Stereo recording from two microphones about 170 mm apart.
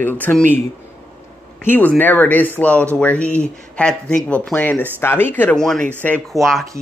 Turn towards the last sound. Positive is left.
turn(degrees=0)  # may be behind; listen again after turning